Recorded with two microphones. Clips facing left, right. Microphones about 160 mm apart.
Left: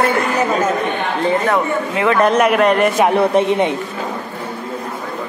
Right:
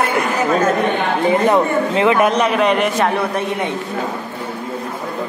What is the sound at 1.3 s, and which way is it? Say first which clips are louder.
Speech: right 3 dB; 20° right (ahead or behind).